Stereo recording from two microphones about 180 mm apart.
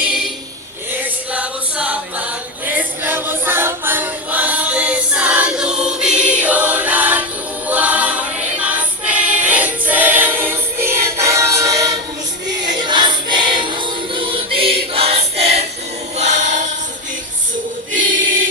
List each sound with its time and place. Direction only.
0.9 s choir: 5° right (ahead or behind)
12.6 s music: 25° right (ahead or behind)
14.9 s choir: 35° right (ahead or behind)
17.9 s choir: 90° right